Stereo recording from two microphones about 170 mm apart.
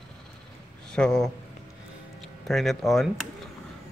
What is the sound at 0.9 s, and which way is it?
A man's voice, 5° left (ahead or behind).